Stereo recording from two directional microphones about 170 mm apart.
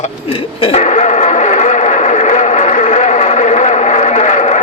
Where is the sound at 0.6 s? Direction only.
40° left (ahead or behind).